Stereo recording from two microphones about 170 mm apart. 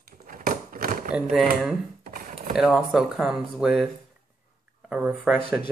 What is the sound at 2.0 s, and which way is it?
Computer keyboard, 55° right (ahead or behind).